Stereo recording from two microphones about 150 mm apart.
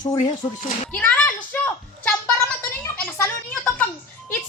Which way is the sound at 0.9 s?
10° left (ahead or behind).